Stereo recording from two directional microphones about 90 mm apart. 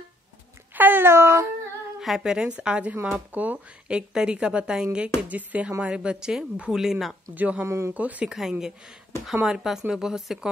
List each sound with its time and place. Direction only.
0.7 s cat: 20° right (ahead or behind)
2.0 s speech: 5° right (ahead or behind)
7.3 s speech: 15° right (ahead or behind)
7.6 s speech: 30° right (ahead or behind)
7.9 s speech: 15° right (ahead or behind)
8.4 s speech: 5° right (ahead or behind)